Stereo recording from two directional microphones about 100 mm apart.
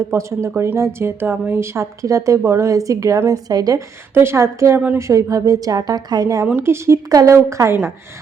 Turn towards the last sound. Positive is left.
turn(degrees=-30)  # may be behind; listen again after turning